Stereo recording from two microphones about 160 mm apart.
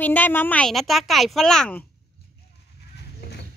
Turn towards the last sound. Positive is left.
turn(degrees=80)